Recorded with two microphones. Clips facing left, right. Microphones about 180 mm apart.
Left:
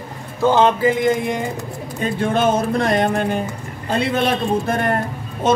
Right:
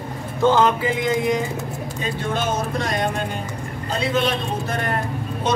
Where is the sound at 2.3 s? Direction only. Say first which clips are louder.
Left 6 dB; 55° left (ahead or behind).